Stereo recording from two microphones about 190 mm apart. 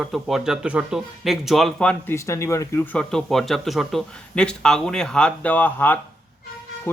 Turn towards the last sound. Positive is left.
turn(degrees=10)  # may be behind; listen again after turning